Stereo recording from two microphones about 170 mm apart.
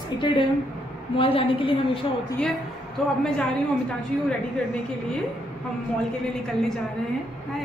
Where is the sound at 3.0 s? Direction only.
5° left (ahead or behind).